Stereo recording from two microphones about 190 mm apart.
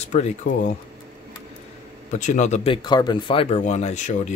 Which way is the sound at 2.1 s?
40° left (ahead or behind).